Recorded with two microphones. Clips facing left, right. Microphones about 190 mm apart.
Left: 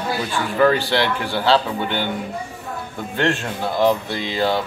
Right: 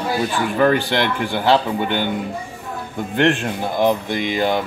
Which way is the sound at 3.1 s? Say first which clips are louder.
Right 4 dB; 15° right (ahead or behind).